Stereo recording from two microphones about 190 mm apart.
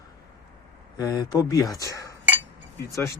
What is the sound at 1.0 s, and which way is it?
Speech, 20° left (ahead or behind).